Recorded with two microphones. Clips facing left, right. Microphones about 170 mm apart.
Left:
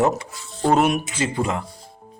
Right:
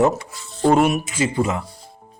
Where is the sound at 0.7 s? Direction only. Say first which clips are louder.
Right 1 dB; 5° right (ahead or behind).